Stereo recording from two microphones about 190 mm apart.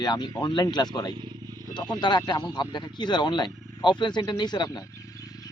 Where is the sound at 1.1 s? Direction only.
25° right (ahead or behind).